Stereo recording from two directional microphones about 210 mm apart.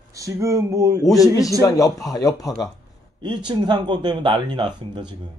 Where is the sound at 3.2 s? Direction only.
20° right (ahead or behind).